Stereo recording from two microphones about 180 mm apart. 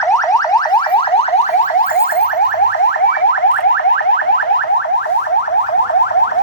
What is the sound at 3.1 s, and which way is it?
Car alarm, 70° left (ahead or behind).